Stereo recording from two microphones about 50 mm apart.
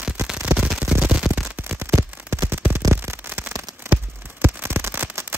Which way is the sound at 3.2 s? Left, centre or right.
Right.